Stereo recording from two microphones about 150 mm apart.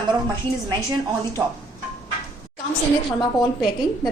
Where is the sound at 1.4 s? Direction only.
10° right (ahead or behind).